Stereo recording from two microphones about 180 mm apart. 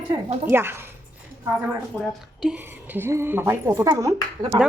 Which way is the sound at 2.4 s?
5° right (ahead or behind).